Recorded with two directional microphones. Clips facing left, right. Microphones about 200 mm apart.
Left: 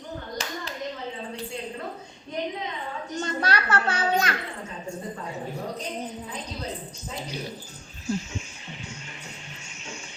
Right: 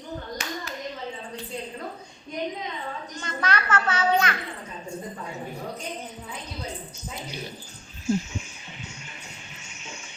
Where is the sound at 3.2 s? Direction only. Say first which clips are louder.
Left 1 dB; 35° left (ahead or behind).